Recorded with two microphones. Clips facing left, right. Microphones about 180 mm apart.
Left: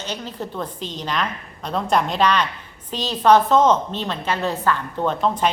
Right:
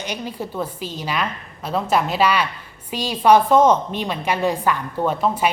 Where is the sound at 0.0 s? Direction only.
10° right (ahead or behind).